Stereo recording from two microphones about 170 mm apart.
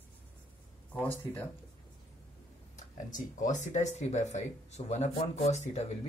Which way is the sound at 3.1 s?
50° left (ahead or behind).